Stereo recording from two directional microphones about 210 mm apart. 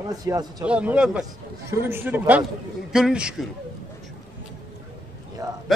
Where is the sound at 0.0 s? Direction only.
15° right (ahead or behind).